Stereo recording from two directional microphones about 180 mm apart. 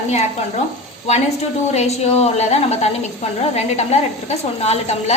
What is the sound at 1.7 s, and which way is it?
A woman's voice, 35° left (ahead or behind).